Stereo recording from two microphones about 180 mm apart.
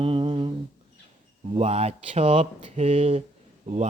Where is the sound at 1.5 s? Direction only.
35° right (ahead or behind).